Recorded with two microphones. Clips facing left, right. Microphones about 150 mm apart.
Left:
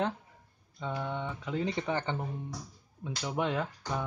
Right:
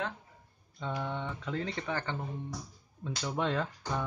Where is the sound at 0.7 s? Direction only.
5° left (ahead or behind); by 2.2 s 20° left (ahead or behind).